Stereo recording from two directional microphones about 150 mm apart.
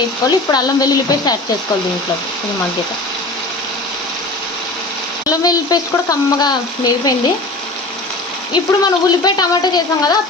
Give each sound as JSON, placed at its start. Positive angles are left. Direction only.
{"t": 0.5, "sound": "frying", "side_deg": 25}
{"t": 5.3, "sound": "frying", "side_deg": 25}
{"t": 8.5, "sound": "frying", "side_deg": 30}